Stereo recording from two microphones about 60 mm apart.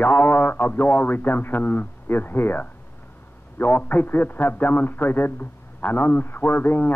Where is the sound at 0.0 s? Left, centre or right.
Left.